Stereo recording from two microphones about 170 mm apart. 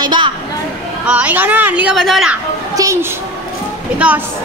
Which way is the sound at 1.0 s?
10° right (ahead or behind).